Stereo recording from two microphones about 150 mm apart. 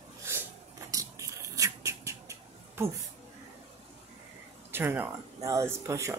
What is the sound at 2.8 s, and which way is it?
Speech, 15° right (ahead or behind).